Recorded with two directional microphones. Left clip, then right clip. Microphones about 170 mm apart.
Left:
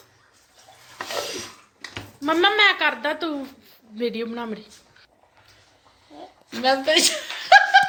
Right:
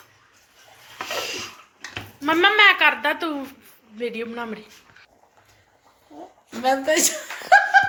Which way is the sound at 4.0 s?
40° left (ahead or behind).